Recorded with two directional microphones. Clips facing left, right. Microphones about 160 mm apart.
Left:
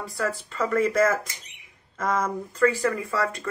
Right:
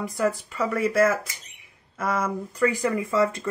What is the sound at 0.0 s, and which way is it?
A woman's voice, 15° right (ahead or behind).